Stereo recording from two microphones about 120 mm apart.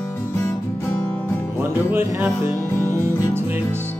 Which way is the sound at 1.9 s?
20° right (ahead or behind).